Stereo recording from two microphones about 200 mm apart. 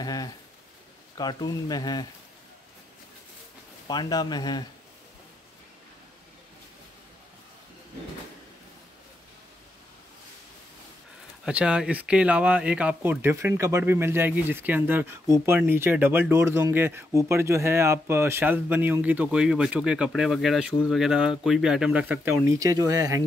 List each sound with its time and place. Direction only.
0.0 s a sound: 20° left (ahead or behind)
1.1 s speech: 20° left (ahead or behind)
3.8 s speech: 20° left (ahead or behind)
11.4 s speech: 5° right (ahead or behind)